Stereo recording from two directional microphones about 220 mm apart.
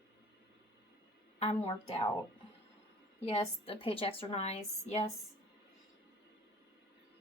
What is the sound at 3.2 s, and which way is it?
A woman's voice, 25° left (ahead or behind).